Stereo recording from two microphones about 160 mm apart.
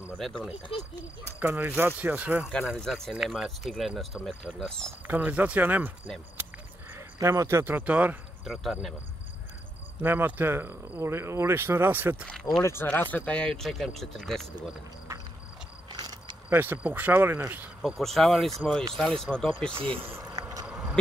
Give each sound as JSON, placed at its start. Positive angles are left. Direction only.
{"t": 0.2, "sound": "speech", "side_deg": 5}
{"t": 1.4, "sound": "speech", "side_deg": -10}
{"t": 5.0, "sound": "speech", "side_deg": -10}
{"t": 9.9, "sound": "speech", "side_deg": -10}
{"t": 12.3, "sound": "speech", "side_deg": 5}
{"t": 15.9, "sound": "a sound", "side_deg": -25}
{"t": 16.4, "sound": "speech", "side_deg": -10}
{"t": 17.8, "sound": "speech", "side_deg": 0}
{"t": 19.7, "sound": "speech", "side_deg": -35}
{"t": 20.3, "sound": "a sound", "side_deg": -20}
{"t": 20.6, "sound": "a sound", "side_deg": -5}